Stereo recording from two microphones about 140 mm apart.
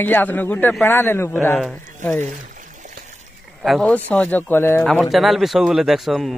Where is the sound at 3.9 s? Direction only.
10° left (ahead or behind).